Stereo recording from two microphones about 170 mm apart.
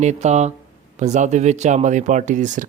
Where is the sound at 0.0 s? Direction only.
40° right (ahead or behind).